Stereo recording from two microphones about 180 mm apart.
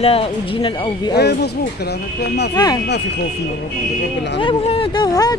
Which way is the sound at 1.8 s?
65° left (ahead or behind).